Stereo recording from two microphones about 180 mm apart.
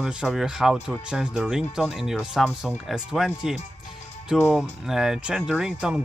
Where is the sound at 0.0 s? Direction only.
5° right (ahead or behind).